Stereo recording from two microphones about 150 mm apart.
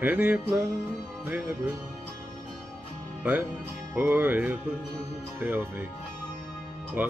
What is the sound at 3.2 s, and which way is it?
Speech, 10° right (ahead or behind).